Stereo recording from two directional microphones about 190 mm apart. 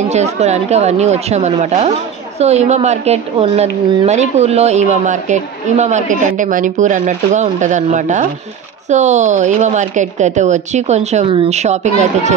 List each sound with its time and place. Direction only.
0.1 s a woman's voice: 35° right (ahead or behind)